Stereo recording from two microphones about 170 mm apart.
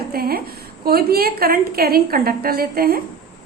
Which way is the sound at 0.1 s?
60° right (ahead or behind).